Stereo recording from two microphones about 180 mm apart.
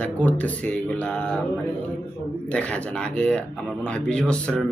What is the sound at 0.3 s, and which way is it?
Speech, 10° left (ahead or behind).